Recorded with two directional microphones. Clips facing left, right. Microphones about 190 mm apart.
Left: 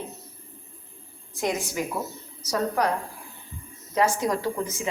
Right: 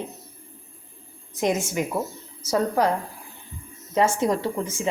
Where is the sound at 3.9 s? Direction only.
25° right (ahead or behind).